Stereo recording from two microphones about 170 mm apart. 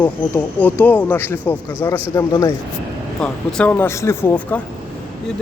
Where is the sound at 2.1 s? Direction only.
20° left (ahead or behind).